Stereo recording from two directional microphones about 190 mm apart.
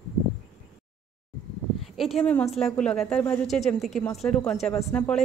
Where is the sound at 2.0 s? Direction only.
Centre (ahead or behind).